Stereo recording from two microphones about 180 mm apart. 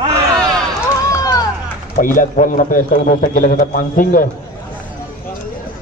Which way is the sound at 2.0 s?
45° left (ahead or behind).